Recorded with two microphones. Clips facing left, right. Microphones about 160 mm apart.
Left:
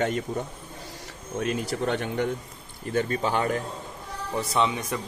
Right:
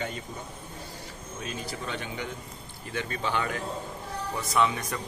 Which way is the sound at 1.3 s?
65° left (ahead or behind).